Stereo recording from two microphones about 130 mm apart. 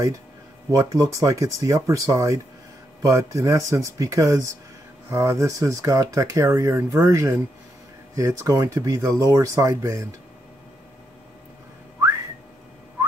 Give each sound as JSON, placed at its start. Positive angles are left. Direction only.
{"t": 0.7, "sound": "speech", "side_deg": -25}